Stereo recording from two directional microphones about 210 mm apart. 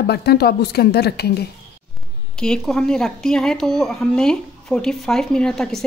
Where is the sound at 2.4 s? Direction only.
5° left (ahead or behind).